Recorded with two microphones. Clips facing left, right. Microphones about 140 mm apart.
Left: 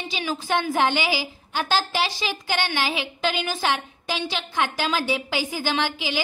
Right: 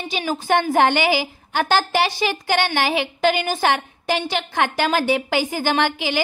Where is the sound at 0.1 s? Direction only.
50° right (ahead or behind).